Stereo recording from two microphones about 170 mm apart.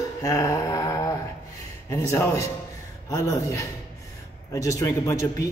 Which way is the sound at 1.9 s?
15° left (ahead or behind).